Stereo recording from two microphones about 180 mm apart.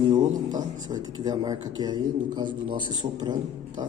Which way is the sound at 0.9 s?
20° right (ahead or behind).